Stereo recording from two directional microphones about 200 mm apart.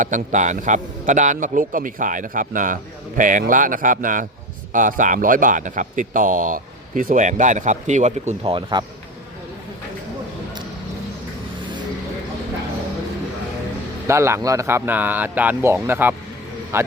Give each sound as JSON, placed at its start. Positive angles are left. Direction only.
{"t": 0.0, "sound": "speech", "side_deg": -40}
{"t": 14.1, "sound": "speech", "side_deg": -15}